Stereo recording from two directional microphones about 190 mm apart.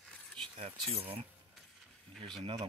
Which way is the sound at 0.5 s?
30° right (ahead or behind).